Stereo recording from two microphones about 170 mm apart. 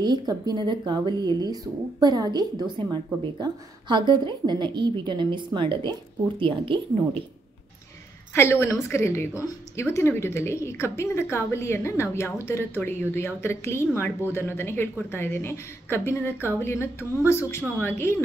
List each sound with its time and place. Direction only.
0.0 s speech: 25° right (ahead or behind)
8.4 s a woman's voice: 15° left (ahead or behind)